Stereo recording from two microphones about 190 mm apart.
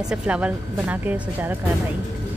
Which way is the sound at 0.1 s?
5° right (ahead or behind).